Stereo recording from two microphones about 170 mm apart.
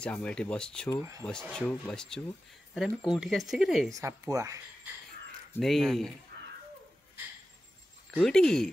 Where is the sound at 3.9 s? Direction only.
20° right (ahead or behind).